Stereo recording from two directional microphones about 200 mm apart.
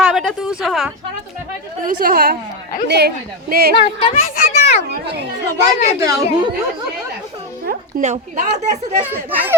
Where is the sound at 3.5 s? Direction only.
50° right (ahead or behind).